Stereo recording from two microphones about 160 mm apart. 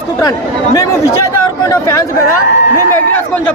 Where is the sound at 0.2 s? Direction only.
20° left (ahead or behind).